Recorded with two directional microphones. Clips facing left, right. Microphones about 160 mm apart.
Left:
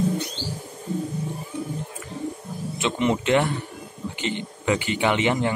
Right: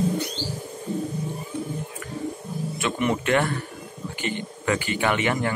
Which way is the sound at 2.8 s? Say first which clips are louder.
Left 2 dB; 20° left (ahead or behind).